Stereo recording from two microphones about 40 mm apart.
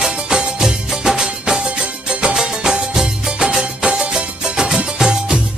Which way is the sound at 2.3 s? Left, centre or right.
Centre.